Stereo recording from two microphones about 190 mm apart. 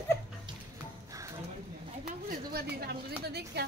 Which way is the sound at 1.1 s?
15° right (ahead or behind).